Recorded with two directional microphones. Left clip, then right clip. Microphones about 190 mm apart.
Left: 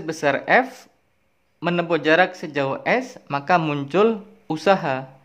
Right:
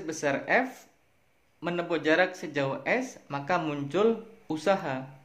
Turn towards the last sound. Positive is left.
turn(degrees=35)  # may be behind; listen again after turning